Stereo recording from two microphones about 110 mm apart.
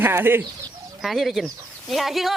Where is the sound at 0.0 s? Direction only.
20° right (ahead or behind).